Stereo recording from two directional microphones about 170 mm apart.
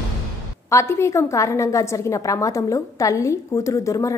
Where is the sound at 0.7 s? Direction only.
15° left (ahead or behind).